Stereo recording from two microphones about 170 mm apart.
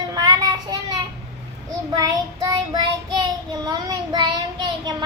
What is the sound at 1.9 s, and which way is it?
Child singing, 20° right (ahead or behind).